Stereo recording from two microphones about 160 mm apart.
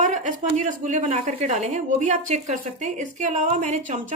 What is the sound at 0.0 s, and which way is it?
A woman's voice, 50° right (ahead or behind).